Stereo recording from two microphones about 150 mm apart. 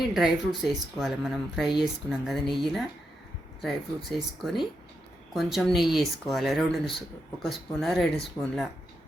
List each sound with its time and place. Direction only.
0.0 s speech: centre (ahead or behind)